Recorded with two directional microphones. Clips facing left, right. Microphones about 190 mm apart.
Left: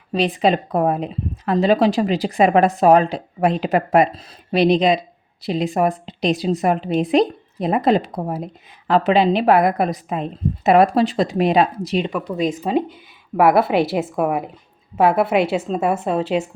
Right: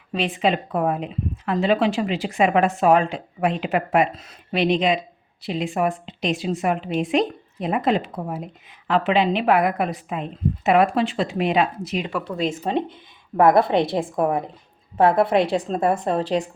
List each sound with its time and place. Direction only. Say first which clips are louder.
0.1 s a woman's voice: left 4 dB; 35° left (ahead or behind)
12.1 s a woman's voice: left 3 dB; 15° left (ahead or behind)